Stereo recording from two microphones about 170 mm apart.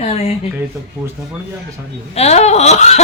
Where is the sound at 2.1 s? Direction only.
40° left (ahead or behind).